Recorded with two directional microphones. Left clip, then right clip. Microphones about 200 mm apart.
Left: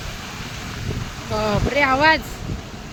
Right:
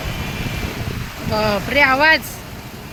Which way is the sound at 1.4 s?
5° left (ahead or behind).